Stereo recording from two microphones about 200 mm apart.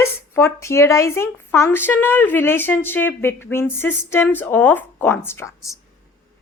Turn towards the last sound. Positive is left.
turn(degrees=15)  # may be behind; listen again after turning